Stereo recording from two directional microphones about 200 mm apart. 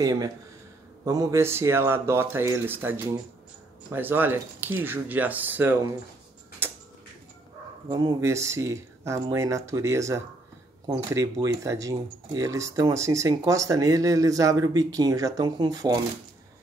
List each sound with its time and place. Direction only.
0.0 s speech: 20° right (ahead or behind)
7.9 s speech: 20° right (ahead or behind)